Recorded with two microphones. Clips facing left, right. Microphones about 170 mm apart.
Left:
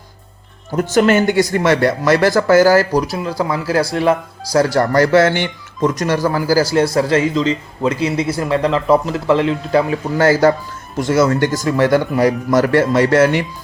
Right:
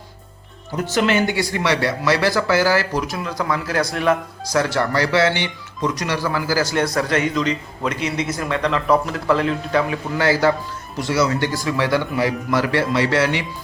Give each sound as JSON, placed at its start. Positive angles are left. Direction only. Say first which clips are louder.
{"t": 0.7, "sound": "speech", "louder": "left 6 dB", "side_deg": 50}